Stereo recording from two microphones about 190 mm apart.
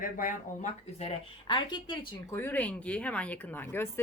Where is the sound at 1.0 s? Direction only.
30° left (ahead or behind).